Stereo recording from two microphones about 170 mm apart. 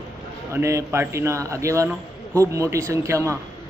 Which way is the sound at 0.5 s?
15° right (ahead or behind).